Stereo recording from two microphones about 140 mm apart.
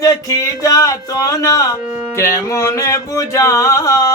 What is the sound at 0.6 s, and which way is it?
Speech, 25° left (ahead or behind).